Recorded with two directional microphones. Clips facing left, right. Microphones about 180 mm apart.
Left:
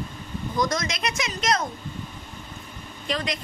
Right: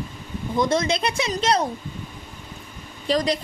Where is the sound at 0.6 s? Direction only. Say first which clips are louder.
Right 5 dB; 30° right (ahead or behind).